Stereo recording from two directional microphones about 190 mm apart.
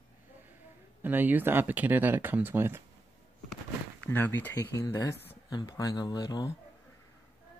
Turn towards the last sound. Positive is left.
turn(degrees=20)  # may be behind; listen again after turning